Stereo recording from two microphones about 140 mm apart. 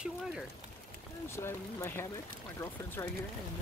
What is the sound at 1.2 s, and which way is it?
Speech, 20° left (ahead or behind).